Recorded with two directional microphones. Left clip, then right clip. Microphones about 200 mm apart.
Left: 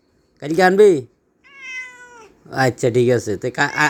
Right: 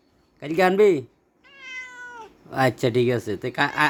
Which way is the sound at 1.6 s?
10° right (ahead or behind).